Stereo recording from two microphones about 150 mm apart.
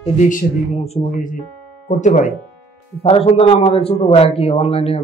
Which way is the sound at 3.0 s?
40° left (ahead or behind).